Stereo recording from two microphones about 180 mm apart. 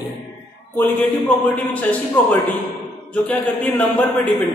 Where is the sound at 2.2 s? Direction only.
10° left (ahead or behind).